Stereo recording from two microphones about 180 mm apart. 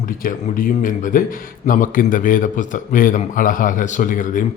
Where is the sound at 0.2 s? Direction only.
50° left (ahead or behind).